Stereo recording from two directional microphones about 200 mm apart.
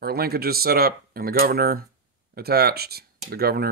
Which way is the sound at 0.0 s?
50° right (ahead or behind).